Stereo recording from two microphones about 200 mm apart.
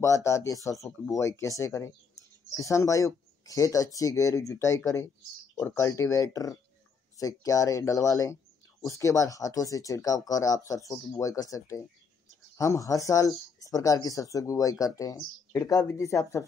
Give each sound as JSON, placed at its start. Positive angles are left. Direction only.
{"t": 0.0, "sound": "speech", "side_deg": 15}